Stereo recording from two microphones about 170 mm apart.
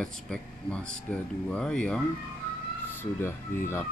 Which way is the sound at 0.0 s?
5° left (ahead or behind).